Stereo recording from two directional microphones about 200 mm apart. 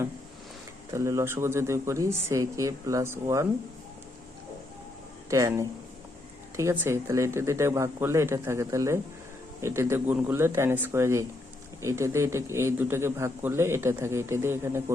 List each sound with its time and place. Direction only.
0.9 s a man's voice: 15° right (ahead or behind)
5.3 s a man's voice: 15° right (ahead or behind)